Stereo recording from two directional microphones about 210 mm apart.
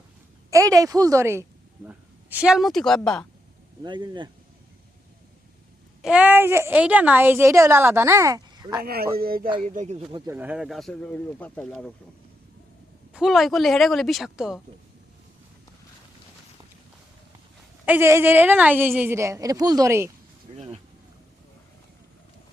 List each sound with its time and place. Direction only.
0.5 s speech: 15° right (ahead or behind); by 3.2 s 5° left (ahead or behind)
3.8 s speech: 20° right (ahead or behind)
6.0 s a woman's voice: 5° right (ahead or behind)
8.8 s speech: 45° right (ahead or behind)
10.1 s speech: 20° right (ahead or behind)
10.3 s speech: 5° right (ahead or behind)
13.1 s speech: centre (ahead or behind)
17.8 s a woman's voice: 10° right (ahead or behind)
20.5 s speech: 30° right (ahead or behind)